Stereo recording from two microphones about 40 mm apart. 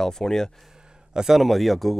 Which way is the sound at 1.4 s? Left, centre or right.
Centre.